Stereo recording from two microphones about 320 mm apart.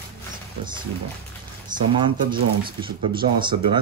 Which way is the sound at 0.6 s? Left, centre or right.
Centre.